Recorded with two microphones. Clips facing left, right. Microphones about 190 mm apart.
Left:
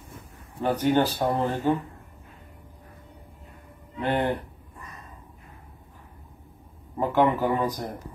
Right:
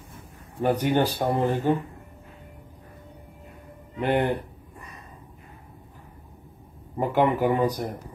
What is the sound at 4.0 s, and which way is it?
Speech, 15° right (ahead or behind).